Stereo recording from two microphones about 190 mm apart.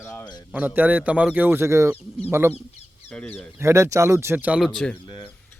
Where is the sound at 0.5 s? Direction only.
10° right (ahead or behind).